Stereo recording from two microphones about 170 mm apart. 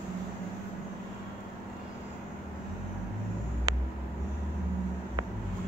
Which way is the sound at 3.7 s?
20° right (ahead or behind).